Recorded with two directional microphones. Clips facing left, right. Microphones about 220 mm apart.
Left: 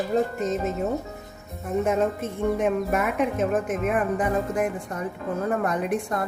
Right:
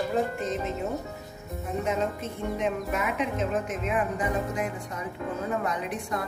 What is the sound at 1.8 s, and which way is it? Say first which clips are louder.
Speech: left 4 dB; 50° left (ahead or behind).